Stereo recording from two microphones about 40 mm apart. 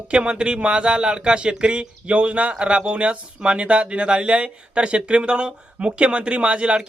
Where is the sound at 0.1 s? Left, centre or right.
Right.